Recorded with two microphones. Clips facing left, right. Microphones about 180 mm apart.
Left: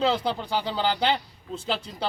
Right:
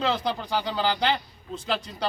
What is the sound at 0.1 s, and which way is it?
Speech, 30° left (ahead or behind).